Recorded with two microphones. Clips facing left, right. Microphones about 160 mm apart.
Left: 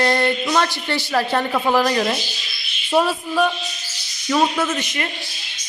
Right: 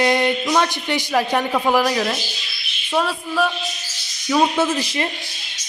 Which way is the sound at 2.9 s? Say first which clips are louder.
Left 2 dB; centre (ahead or behind).